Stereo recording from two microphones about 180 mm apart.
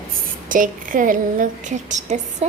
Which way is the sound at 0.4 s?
50° right (ahead or behind).